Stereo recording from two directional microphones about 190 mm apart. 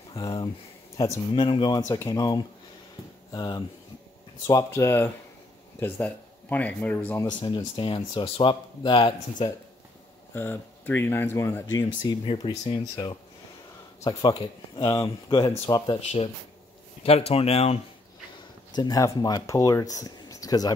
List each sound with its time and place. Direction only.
0.1 s speech: 30° left (ahead or behind)
0.9 s speech: 15° left (ahead or behind)
7.2 s speech: 25° left (ahead or behind)
10.3 s speech: 10° left (ahead or behind)
17.3 s speech: 30° left (ahead or behind)
18.8 s speech: 20° left (ahead or behind)